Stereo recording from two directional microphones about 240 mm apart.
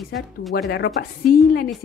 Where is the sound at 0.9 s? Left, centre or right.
Left.